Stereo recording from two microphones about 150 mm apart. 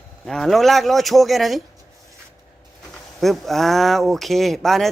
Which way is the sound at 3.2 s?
Centre (ahead or behind).